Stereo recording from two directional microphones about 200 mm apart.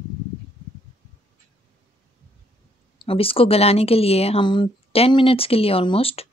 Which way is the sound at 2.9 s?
25° left (ahead or behind).